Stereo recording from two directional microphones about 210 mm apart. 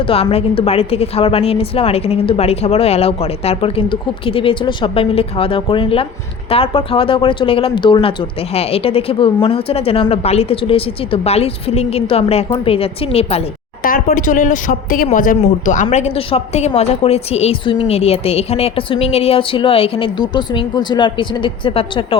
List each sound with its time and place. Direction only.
0.1 s speech: 30° left (ahead or behind)
13.8 s speech: 40° left (ahead or behind); by 22.2 s 25° left (ahead or behind)